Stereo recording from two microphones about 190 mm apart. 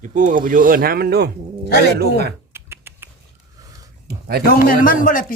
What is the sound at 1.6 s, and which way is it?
Speech, 60° left (ahead or behind).